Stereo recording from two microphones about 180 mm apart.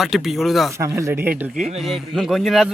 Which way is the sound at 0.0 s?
Centre (ahead or behind).